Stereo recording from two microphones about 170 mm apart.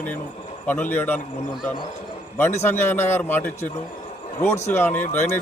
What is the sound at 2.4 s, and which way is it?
Speech, 15° left (ahead or behind).